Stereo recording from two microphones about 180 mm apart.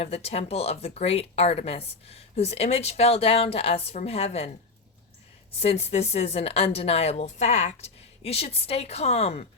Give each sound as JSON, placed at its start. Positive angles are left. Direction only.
{"t": 0.0, "sound": "speech", "side_deg": 35}
{"t": 5.5, "sound": "speech", "side_deg": 35}